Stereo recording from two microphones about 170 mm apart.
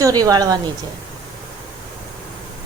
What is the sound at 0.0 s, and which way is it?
Speech, 20° right (ahead or behind).